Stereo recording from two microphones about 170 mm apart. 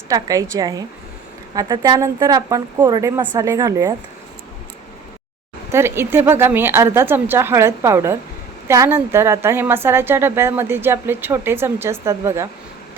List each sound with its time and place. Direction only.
0.1 s speech: 20° right (ahead or behind)
5.7 s a woman's voice: 15° right (ahead or behind)